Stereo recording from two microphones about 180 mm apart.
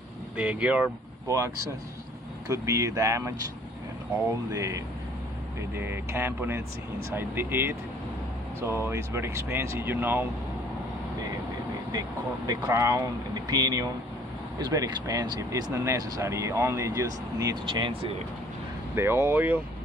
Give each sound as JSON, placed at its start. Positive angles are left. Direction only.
{"t": 0.4, "sound": "speech", "side_deg": -5}
{"t": 1.2, "sound": "speech", "side_deg": -20}
{"t": 12.4, "sound": "speech", "side_deg": -20}
{"t": 18.9, "sound": "speech", "side_deg": -15}